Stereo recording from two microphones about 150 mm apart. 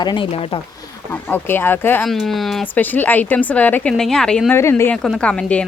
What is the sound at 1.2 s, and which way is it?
Speech, 15° left (ahead or behind).